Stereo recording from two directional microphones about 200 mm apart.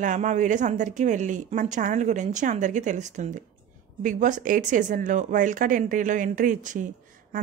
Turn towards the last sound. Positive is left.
turn(degrees=-40)  # may be behind; listen again after turning